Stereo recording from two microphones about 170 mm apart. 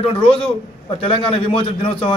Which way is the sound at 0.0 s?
35° left (ahead or behind).